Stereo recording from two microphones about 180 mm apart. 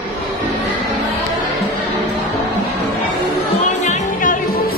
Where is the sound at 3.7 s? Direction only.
40° left (ahead or behind).